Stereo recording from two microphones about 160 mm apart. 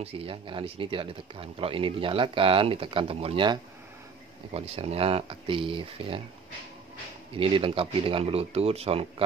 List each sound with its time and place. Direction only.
0.0 s speech: 35° right (ahead or behind)
7.3 s speech: 35° right (ahead or behind)